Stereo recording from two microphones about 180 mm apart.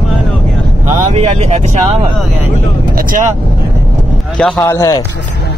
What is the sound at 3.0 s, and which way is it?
Speech, 50° right (ahead or behind).